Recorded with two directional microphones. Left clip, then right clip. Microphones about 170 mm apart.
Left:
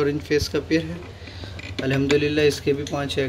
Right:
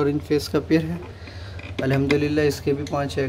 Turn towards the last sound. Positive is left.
turn(degrees=0)  # may be behind; listen again after turning